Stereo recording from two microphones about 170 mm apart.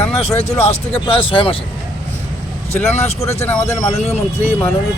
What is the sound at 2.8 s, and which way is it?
Speech, 40° left (ahead or behind).